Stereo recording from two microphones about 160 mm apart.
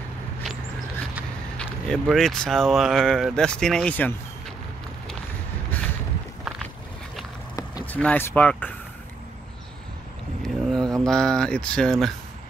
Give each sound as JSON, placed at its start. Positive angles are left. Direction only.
{"t": 1.6, "sound": "speech", "side_deg": 5}
{"t": 5.7, "sound": "vehicle", "side_deg": 10}
{"t": 7.8, "sound": "speech", "side_deg": 10}
{"t": 10.4, "sound": "speech", "side_deg": 5}